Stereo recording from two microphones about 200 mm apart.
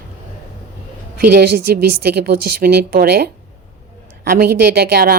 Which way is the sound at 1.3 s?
50° right (ahead or behind).